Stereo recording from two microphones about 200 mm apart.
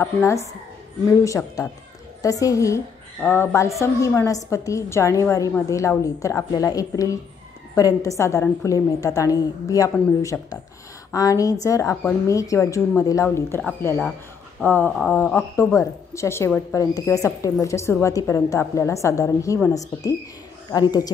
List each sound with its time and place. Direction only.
0.0 s a woman's voice: 15° left (ahead or behind)